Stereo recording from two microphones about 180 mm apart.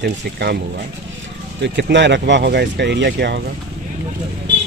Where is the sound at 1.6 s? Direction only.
75° right (ahead or behind).